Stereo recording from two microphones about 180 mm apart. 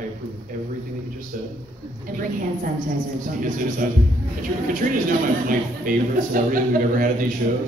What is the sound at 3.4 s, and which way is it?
Speech, 45° right (ahead or behind).